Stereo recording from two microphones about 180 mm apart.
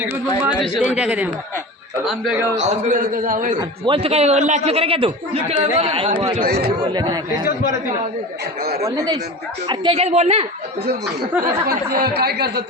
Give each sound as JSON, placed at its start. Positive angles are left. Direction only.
{"t": 0.8, "sound": "speech", "side_deg": -5}
{"t": 2.6, "sound": "a man's voice", "side_deg": -40}
{"t": 3.6, "sound": "a man's voice", "side_deg": -30}
{"t": 6.4, "sound": "a man's voice", "side_deg": -60}
{"t": 8.6, "sound": "a man's voice", "side_deg": -60}
{"t": 9.6, "sound": "a man's voice", "side_deg": -30}
{"t": 11.9, "sound": "a man's voice", "side_deg": -60}